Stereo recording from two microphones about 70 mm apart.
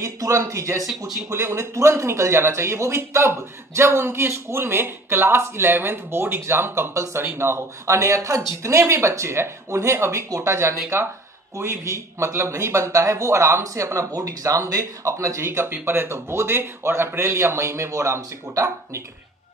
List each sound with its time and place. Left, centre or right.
0.0 s speech: right